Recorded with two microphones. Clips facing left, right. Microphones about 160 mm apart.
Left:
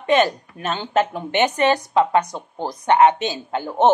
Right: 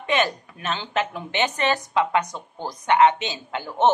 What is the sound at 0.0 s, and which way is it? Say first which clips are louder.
Speech: left 6 dB; 40° left (ahead or behind).